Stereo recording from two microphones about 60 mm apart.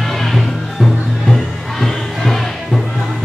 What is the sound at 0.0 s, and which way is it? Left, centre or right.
Music, centre.